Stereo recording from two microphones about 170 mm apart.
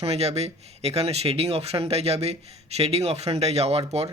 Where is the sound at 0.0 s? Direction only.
40° right (ahead or behind).